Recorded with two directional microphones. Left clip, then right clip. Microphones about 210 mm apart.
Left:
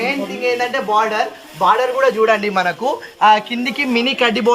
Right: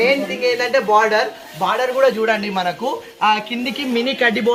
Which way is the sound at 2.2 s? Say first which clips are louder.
Left 4 dB; 55° left (ahead or behind).